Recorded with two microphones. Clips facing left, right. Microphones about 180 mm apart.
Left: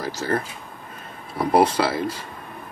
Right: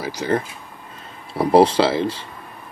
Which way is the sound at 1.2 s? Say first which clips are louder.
Right 4 dB; 30° right (ahead or behind).